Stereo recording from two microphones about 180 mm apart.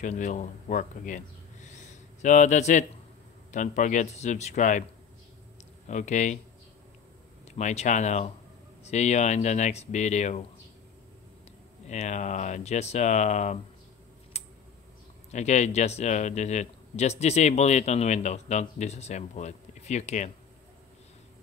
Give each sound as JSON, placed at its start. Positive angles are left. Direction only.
{"t": 0.0, "sound": "speech", "side_deg": 45}
{"t": 5.9, "sound": "speech", "side_deg": 40}
{"t": 7.4, "sound": "speech", "side_deg": 40}
{"t": 11.9, "sound": "speech", "side_deg": 40}
{"t": 14.3, "sound": "typing", "side_deg": 35}
{"t": 15.3, "sound": "speech", "side_deg": 40}